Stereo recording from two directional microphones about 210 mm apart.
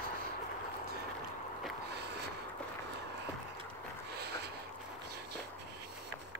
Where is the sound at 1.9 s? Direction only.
50° right (ahead or behind).